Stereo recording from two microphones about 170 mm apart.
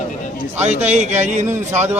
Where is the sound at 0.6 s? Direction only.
40° right (ahead or behind).